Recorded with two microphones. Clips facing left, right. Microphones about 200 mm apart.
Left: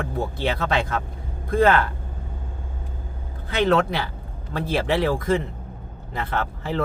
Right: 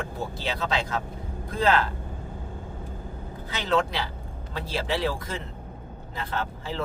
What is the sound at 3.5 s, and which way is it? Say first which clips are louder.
Speech: left 6 dB; 60° left (ahead or behind).